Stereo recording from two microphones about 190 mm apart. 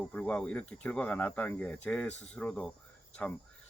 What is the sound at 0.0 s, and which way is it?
Speech, 10° left (ahead or behind).